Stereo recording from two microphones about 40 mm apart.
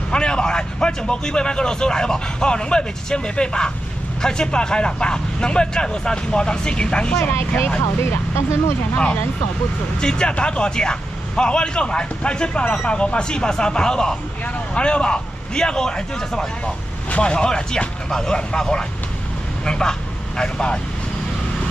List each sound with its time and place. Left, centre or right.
0.1 s speech: left
7.3 s speech: left
8.0 s speech: left
8.9 s speech: left